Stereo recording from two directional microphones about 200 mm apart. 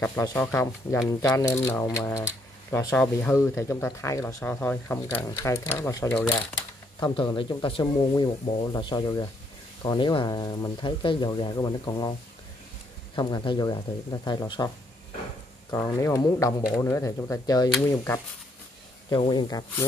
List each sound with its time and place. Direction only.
0.0 s speech: 10° left (ahead or behind)
15.7 s speech: 15° left (ahead or behind)
19.0 s speech: 25° left (ahead or behind)